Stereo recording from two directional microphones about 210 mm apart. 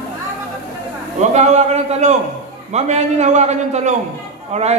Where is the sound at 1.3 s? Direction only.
30° right (ahead or behind).